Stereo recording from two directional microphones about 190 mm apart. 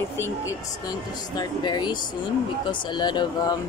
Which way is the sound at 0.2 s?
20° left (ahead or behind).